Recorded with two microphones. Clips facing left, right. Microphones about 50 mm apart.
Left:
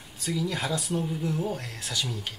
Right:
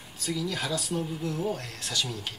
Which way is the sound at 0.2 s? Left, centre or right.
Centre.